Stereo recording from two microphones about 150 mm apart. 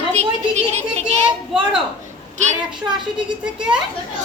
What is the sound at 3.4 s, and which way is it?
Speech, 5° right (ahead or behind).